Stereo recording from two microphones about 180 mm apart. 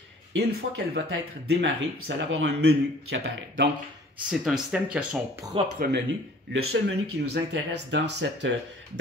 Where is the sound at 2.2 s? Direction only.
85° right.